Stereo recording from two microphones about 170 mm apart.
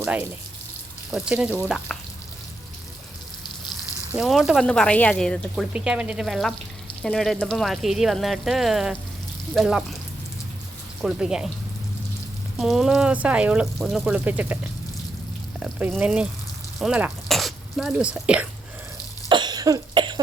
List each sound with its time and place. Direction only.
0.0 s speech: 10° right (ahead or behind)
4.1 s speech: 5° right (ahead or behind)
11.0 s speech: 5° right (ahead or behind)
12.5 s speech: centre (ahead or behind)
15.6 s speech: 10° right (ahead or behind)
19.3 s cough: 25° right (ahead or behind)